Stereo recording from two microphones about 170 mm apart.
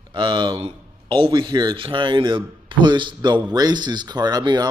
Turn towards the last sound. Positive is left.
turn(degrees=-25)  # may be behind; listen again after turning